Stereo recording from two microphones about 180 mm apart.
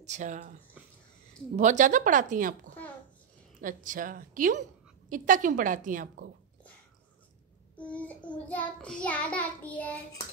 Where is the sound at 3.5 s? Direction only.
50° right (ahead or behind).